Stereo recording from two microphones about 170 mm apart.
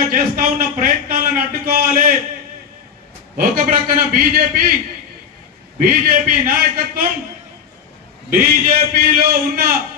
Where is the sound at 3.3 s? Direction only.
60° right (ahead or behind).